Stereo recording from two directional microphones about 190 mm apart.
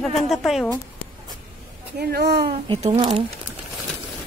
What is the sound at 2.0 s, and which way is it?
Speech, 55° right (ahead or behind).